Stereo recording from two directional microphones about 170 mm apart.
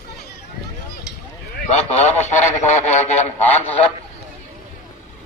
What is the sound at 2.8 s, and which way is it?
Speech, 40° left (ahead or behind).